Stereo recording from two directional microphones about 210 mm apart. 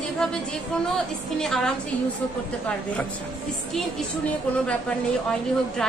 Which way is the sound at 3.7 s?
5° left (ahead or behind).